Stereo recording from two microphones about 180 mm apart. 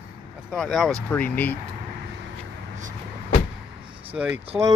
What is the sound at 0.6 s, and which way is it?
Speech, centre (ahead or behind).